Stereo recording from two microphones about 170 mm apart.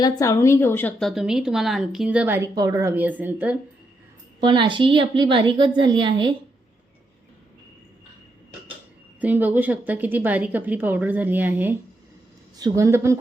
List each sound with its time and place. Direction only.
0.0 s speech: 20° left (ahead or behind); by 3.6 s 10° right (ahead or behind)
4.4 s a woman's voice: 30° right (ahead or behind)
9.2 s a woman's voice: 10° right (ahead or behind)